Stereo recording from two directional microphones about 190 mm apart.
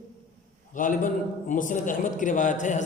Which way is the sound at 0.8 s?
45° left (ahead or behind).